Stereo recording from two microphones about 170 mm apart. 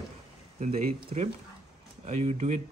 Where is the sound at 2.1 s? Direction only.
45° right (ahead or behind).